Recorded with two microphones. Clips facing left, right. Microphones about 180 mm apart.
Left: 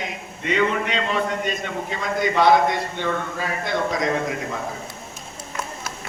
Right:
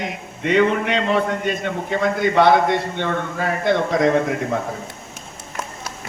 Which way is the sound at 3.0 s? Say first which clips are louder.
Right 2 dB; 55° right (ahead or behind).